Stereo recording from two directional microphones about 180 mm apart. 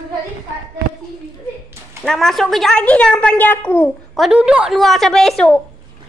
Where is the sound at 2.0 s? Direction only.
Centre (ahead or behind).